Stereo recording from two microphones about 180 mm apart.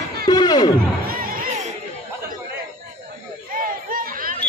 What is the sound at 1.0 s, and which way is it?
Music, 50° right (ahead or behind).